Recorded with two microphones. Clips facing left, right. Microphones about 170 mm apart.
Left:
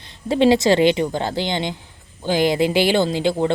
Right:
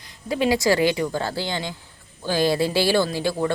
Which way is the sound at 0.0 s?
25° left (ahead or behind).